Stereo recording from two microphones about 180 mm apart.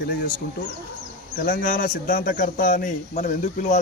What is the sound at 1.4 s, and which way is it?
Speech, 50° left (ahead or behind).